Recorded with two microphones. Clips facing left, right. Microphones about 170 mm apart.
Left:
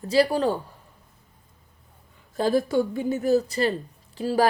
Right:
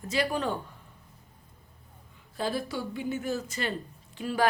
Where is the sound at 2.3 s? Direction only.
45° left (ahead or behind).